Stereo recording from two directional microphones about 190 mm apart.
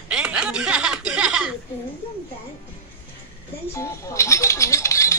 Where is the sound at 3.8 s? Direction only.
15° left (ahead or behind).